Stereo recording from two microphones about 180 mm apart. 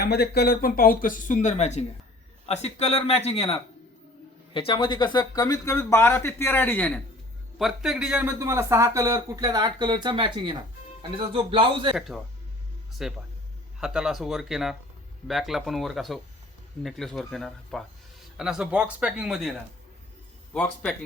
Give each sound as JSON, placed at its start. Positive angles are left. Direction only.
{"t": 0.0, "sound": "speech", "side_deg": 65}
{"t": 4.5, "sound": "speech", "side_deg": 30}
{"t": 11.9, "sound": "speech", "side_deg": 0}